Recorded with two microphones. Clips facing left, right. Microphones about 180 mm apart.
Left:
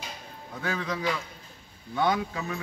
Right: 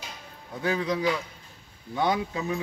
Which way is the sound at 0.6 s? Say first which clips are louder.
Right 5 dB; 15° right (ahead or behind).